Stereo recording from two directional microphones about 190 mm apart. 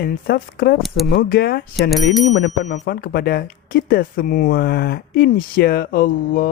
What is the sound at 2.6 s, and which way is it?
Speech, 60° left (ahead or behind).